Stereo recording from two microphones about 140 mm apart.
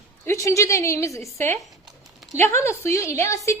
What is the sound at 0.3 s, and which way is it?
A woman's voice, 20° left (ahead or behind).